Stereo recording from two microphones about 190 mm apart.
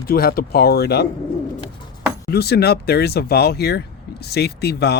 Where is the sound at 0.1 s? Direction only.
50° left (ahead or behind).